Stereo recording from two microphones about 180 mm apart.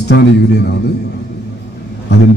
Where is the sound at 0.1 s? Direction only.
65° left (ahead or behind).